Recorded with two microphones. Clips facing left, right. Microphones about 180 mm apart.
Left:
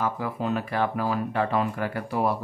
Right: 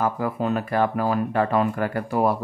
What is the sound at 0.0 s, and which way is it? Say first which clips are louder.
Speech: right 4 dB; 50° right (ahead or behind).